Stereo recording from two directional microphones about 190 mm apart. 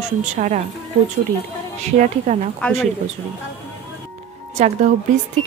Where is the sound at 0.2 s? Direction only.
40° right (ahead or behind).